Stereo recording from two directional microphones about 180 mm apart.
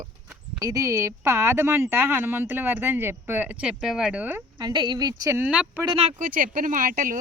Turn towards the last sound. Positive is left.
turn(degrees=-50)  # may be behind; listen again after turning